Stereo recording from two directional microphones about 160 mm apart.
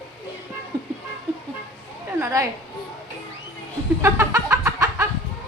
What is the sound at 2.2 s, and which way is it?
Speech, 20° right (ahead or behind).